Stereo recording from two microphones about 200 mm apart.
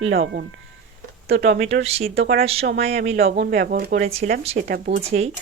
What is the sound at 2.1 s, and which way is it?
Speech, 50° right (ahead or behind).